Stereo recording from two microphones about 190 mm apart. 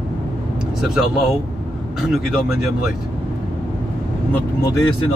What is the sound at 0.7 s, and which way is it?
Speech, centre (ahead or behind).